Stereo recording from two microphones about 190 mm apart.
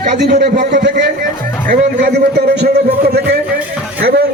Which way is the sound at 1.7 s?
55° right (ahead or behind).